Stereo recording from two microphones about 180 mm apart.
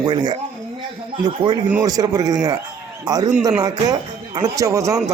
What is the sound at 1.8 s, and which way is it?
A man's voice, 20° right (ahead or behind).